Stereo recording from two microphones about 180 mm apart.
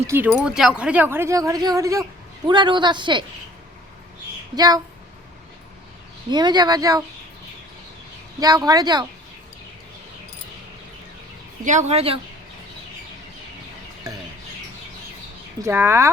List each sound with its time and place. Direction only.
0.3 s a woman's voice: 5° right (ahead or behind); by 3.2 s 25° right (ahead or behind)
4.5 s a woman's voice: 20° right (ahead or behind)
6.3 s a woman's voice: 25° right (ahead or behind)
8.4 s a woman's voice: 20° right (ahead or behind)
11.6 s a woman's voice: 40° right (ahead or behind)
15.6 s speech: 15° right (ahead or behind)